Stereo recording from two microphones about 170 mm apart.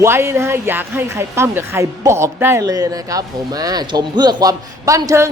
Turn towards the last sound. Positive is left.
turn(degrees=-20)  # may be behind; listen again after turning